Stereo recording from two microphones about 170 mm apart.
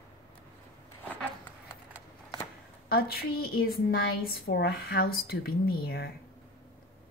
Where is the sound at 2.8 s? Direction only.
65° left (ahead or behind).